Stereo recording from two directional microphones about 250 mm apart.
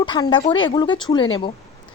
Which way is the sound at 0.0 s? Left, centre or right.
Centre.